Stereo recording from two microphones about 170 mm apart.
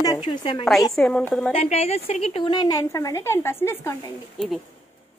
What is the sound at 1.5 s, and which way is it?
A woman's voice, 35° left (ahead or behind).